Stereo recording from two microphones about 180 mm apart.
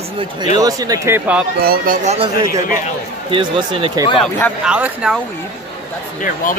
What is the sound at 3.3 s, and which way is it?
Speech, 25° right (ahead or behind).